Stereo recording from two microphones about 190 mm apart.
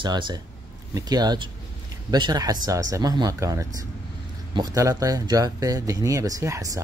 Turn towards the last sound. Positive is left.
turn(degrees=-15)  # may be behind; listen again after turning